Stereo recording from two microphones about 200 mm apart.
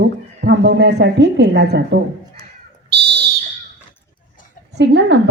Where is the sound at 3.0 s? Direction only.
55° right (ahead or behind).